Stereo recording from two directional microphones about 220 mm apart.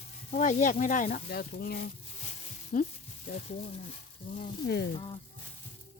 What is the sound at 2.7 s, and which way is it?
Sizzle, 40° left (ahead or behind).